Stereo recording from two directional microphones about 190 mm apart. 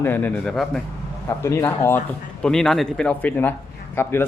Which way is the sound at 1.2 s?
15° left (ahead or behind).